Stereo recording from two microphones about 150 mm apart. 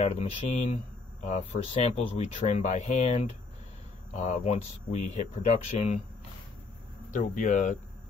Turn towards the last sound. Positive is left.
turn(degrees=55)  # may be behind; listen again after turning